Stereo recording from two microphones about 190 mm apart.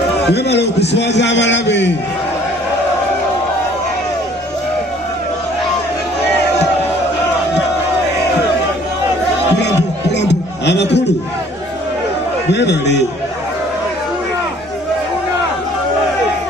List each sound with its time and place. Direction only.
0.9 s a man's voice: 65° left (ahead or behind)
9.6 s a sound: 65° left (ahead or behind)
12.5 s a man's voice: 65° left (ahead or behind)